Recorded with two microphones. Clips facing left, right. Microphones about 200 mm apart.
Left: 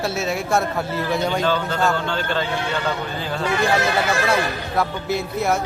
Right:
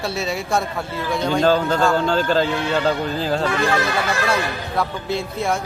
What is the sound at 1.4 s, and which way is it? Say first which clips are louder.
A man's voice: right 4 dB; 40° right (ahead or behind).